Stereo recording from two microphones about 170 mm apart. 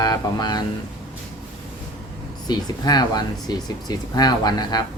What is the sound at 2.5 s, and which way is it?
Speech, 25° left (ahead or behind).